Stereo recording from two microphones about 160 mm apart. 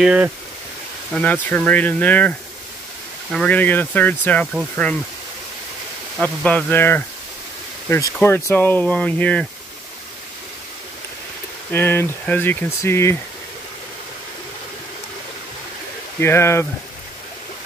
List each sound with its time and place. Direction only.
0.0 s speech: 5° right (ahead or behind)
1.1 s speech: 10° left (ahead or behind)
6.2 s speech: 10° left (ahead or behind)
11.7 s speech: 15° left (ahead or behind)
16.2 s speech: 15° left (ahead or behind)